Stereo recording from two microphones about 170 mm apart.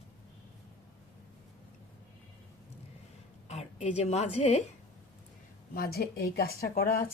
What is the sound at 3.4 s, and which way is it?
A woman's voice, 40° left (ahead or behind).